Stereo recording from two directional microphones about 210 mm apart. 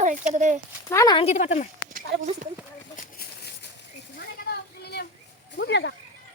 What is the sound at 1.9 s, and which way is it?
Speech, 35° right (ahead or behind).